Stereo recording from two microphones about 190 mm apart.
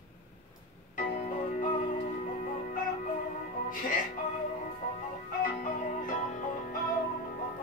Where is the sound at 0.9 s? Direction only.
40° left (ahead or behind).